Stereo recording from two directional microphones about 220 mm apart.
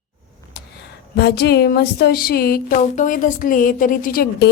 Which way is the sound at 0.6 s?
45° left (ahead or behind).